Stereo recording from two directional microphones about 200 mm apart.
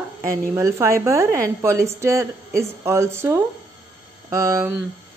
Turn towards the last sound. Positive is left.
turn(degrees=-15)  # may be behind; listen again after turning